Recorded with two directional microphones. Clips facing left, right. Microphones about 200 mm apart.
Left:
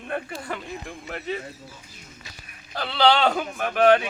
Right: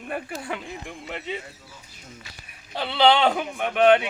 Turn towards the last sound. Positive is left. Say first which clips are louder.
# even
turn(degrees=-15)  # may be behind; listen again after turning